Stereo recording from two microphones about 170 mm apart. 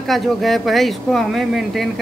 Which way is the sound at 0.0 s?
Centre (ahead or behind).